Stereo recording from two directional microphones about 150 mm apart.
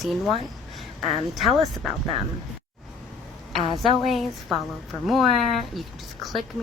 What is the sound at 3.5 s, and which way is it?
Speech, centre (ahead or behind).